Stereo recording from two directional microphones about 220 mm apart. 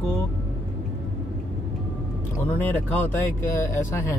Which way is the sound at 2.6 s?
10° left (ahead or behind).